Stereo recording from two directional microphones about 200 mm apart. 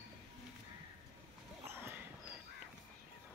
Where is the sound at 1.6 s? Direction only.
10° right (ahead or behind).